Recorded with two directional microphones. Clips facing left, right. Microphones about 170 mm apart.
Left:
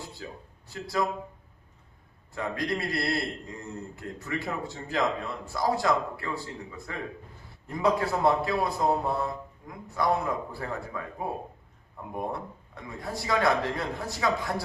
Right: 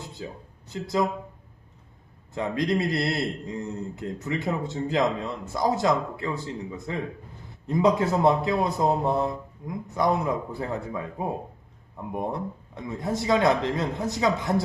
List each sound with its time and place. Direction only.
0.2 s a man's voice: 20° right (ahead or behind)
2.3 s a man's voice: 20° right (ahead or behind)